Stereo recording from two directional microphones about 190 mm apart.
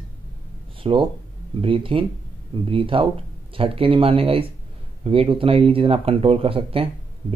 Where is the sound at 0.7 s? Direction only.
30° right (ahead or behind).